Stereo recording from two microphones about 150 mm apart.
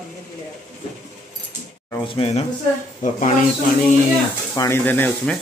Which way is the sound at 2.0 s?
40° left (ahead or behind).